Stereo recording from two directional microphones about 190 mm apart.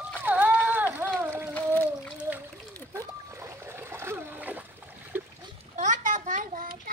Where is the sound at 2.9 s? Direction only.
15° right (ahead or behind).